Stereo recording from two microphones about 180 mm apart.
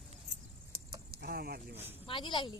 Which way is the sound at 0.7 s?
55° right (ahead or behind).